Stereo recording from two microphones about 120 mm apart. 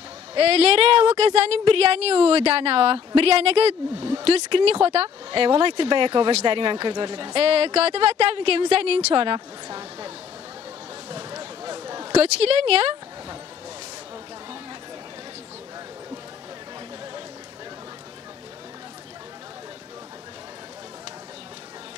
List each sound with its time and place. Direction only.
0.3 s a woman's voice: 55° right (ahead or behind)
9.1 s a woman's voice: 45° right (ahead or behind)
11.1 s a sound: 35° right (ahead or behind)
12.1 s a woman's voice: 55° right (ahead or behind)